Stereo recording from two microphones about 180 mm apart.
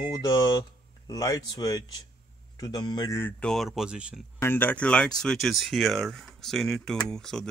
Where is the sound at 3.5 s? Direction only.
Centre (ahead or behind).